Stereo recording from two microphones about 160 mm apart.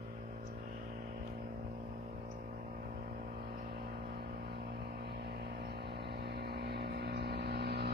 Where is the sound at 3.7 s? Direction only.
90° right.